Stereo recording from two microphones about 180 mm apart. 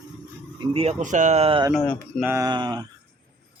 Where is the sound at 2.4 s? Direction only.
25° right (ahead or behind).